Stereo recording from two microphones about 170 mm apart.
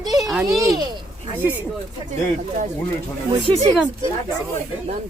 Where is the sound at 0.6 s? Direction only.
25° right (ahead or behind).